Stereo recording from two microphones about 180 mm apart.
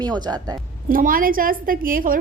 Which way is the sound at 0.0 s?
25° right (ahead or behind).